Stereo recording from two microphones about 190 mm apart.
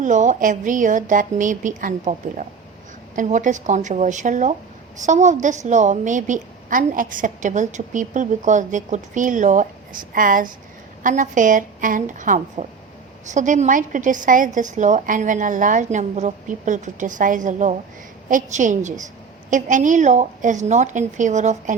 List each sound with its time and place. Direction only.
0.0 s a woman's voice: 40° right (ahead or behind)